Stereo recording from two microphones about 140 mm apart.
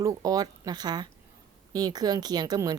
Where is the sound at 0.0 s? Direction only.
25° right (ahead or behind).